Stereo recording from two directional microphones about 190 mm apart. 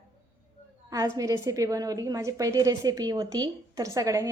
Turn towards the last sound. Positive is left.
turn(degrees=-15)  # may be behind; listen again after turning